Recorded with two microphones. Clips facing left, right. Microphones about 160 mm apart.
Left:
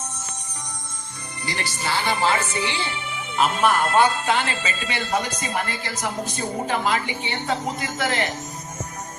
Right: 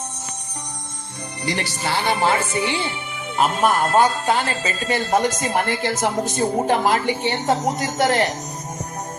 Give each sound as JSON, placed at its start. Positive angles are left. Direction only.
{"t": 1.5, "sound": "a man's voice", "side_deg": -65}